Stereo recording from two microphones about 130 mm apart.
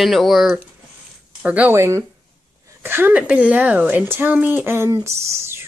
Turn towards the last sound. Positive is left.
turn(degrees=-20)  # may be behind; listen again after turning